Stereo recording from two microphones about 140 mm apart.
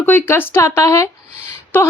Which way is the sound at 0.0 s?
15° left (ahead or behind).